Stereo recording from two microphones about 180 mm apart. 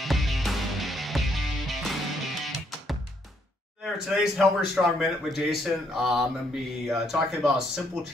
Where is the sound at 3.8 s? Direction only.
Centre (ahead or behind).